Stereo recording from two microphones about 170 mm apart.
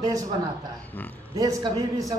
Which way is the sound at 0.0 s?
20° right (ahead or behind).